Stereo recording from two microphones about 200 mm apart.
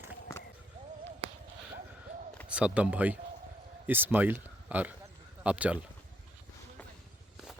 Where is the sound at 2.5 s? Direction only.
5° right (ahead or behind).